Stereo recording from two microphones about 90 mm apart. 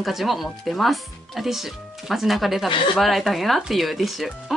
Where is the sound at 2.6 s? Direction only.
65° left (ahead or behind).